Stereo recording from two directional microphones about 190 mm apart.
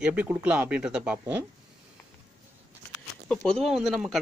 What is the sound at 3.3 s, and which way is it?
Speech, centre (ahead or behind).